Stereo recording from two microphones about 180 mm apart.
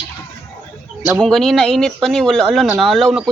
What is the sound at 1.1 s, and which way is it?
Speech, centre (ahead or behind).